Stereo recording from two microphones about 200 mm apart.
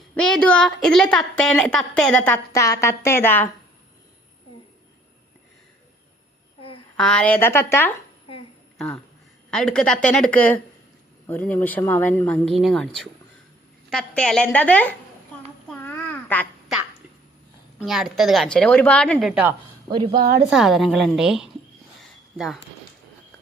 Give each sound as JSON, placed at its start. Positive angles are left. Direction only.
{"t": 0.1, "sound": "a woman's voice", "side_deg": 5}
{"t": 2.5, "sound": "speech", "side_deg": 15}
{"t": 6.9, "sound": "speech", "side_deg": 5}
{"t": 9.5, "sound": "a woman's voice", "side_deg": 5}
{"t": 15.7, "sound": "babbling", "side_deg": 10}
{"t": 17.7, "sound": "a woman's voice", "side_deg": 0}
{"t": 19.9, "sound": "speech", "side_deg": -25}
{"t": 20.5, "sound": "a woman's voice", "side_deg": 0}